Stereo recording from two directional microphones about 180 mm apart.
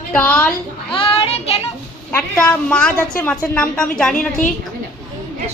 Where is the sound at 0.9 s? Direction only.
30° left (ahead or behind).